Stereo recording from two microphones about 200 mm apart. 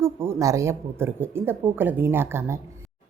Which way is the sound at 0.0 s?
15° right (ahead or behind).